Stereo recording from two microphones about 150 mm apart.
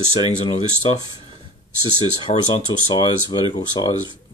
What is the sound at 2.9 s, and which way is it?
Speech, 30° left (ahead or behind).